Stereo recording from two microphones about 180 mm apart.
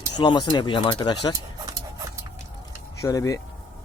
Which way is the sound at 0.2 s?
25° left (ahead or behind).